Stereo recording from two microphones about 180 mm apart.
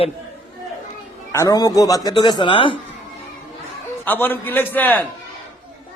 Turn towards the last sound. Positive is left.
turn(degrees=10)  # may be behind; listen again after turning